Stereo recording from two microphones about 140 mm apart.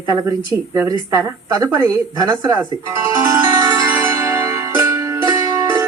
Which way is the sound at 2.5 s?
20° right (ahead or behind).